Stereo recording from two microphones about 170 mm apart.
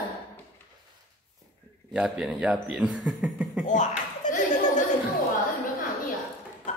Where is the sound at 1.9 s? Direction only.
5° right (ahead or behind).